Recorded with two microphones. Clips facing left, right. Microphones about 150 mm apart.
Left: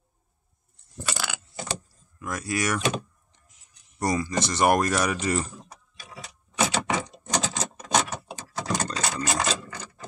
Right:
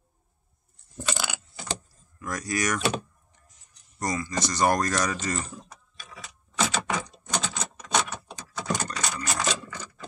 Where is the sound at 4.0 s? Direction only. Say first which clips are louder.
Left 3 dB; 30° left (ahead or behind).